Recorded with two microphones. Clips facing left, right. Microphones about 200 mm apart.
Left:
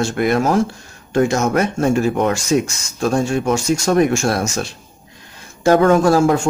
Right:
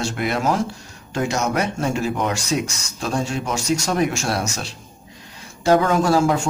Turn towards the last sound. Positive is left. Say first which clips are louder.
# left 4 dB
turn(degrees=50)  # may be behind; listen again after turning